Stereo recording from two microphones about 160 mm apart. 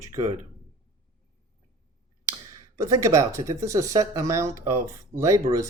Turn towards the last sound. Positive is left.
turn(degrees=-20)  # may be behind; listen again after turning